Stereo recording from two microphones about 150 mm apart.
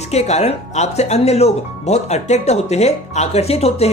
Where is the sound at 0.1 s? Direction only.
45° left (ahead or behind).